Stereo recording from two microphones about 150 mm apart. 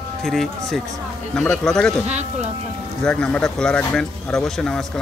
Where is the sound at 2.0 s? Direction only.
45° right (ahead or behind).